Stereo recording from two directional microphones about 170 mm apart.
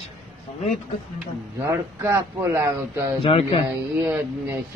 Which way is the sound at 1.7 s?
15° right (ahead or behind).